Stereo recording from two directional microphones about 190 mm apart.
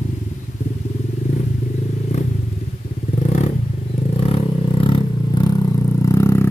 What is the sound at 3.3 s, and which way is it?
Vehicle, 35° left (ahead or behind).